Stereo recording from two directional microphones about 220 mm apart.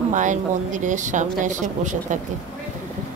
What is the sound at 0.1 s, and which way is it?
Speech, 35° right (ahead or behind).